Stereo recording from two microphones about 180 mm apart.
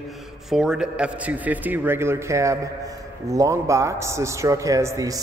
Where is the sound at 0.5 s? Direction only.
5° right (ahead or behind).